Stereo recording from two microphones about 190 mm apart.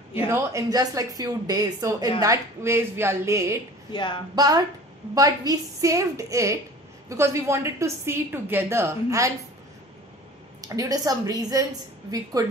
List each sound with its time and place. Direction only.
0.1 s a woman's voice: 15° right (ahead or behind)
3.9 s speech: 25° left (ahead or behind)
4.4 s a woman's voice: 20° right (ahead or behind)
10.6 s speech: 20° right (ahead or behind)